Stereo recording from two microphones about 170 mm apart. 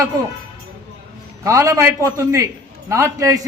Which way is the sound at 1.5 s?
20° right (ahead or behind).